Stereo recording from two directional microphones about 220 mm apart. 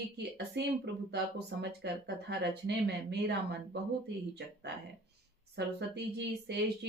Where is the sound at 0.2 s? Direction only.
50° right (ahead or behind).